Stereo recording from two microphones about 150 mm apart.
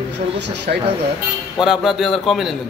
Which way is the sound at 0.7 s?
70° right (ahead or behind).